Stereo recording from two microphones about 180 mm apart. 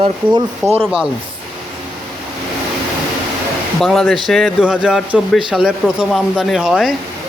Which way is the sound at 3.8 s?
Centre (ahead or behind).